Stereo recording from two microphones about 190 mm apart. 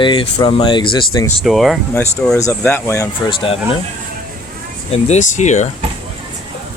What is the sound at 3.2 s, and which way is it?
Speech, 30° left (ahead or behind).